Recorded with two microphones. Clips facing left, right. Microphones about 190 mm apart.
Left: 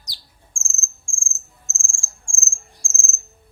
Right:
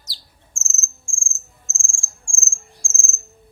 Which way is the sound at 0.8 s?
Centre (ahead or behind).